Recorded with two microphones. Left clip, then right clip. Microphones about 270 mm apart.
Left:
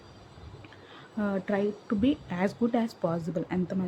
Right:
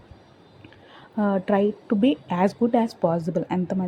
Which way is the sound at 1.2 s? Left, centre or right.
Centre.